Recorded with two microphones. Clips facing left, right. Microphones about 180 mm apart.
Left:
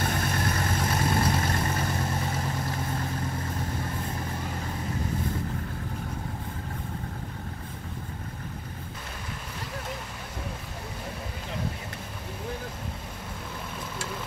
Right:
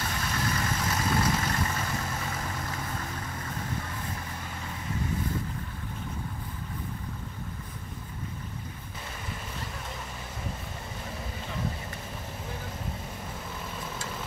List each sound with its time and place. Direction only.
0.0 s vehicle: 50° left (ahead or behind)
1.3 s vehicle: 35° left (ahead or behind)